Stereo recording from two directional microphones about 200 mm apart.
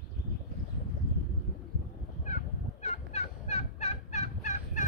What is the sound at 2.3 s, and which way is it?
Fowl, 35° left (ahead or behind).